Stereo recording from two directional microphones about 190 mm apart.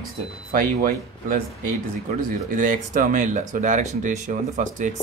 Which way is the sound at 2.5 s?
45° right (ahead or behind).